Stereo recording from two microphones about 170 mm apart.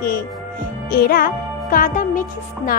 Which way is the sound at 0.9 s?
60° left (ahead or behind).